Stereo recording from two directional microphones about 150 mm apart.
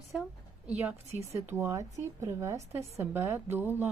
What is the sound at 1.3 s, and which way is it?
A woman's voice, 15° right (ahead or behind).